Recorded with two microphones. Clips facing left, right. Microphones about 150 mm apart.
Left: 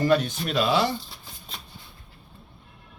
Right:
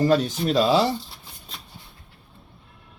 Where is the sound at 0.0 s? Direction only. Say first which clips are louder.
Right 2 dB; 35° right (ahead or behind).